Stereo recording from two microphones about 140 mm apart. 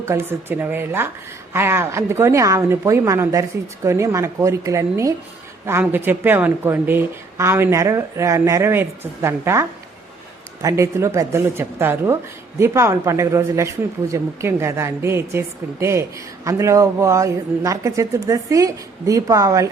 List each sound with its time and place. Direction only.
0.0 s speech: 15° right (ahead or behind)